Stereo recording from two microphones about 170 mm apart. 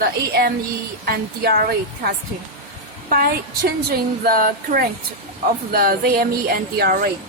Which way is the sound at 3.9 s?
60° right (ahead or behind).